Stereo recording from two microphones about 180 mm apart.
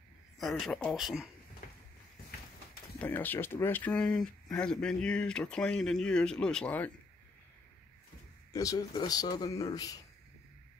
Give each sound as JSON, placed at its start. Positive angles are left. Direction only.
{"t": 0.4, "sound": "speech", "side_deg": 0}
{"t": 3.0, "sound": "speech", "side_deg": 10}
{"t": 8.5, "sound": "a man's voice", "side_deg": 20}